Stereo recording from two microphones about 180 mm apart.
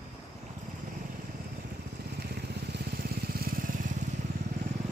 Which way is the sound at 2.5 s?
60° right (ahead or behind).